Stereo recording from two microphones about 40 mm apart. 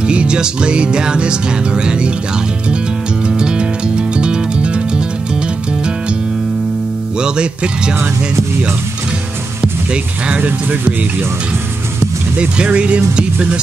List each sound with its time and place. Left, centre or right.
0.0 s music: right
3.3 s music: right
7.2 s music: right
10.4 s speech: right
12.7 s music: right